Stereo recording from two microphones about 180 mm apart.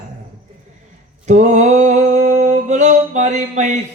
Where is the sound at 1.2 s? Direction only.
40° right (ahead or behind).